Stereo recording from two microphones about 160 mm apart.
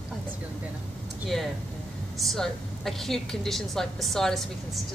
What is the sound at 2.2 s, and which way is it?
A woman's voice, centre (ahead or behind).